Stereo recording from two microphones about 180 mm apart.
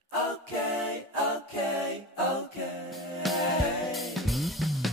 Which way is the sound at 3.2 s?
Centre (ahead or behind).